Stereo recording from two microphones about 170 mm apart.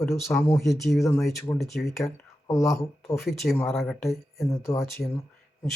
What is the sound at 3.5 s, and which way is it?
Speech, centre (ahead or behind).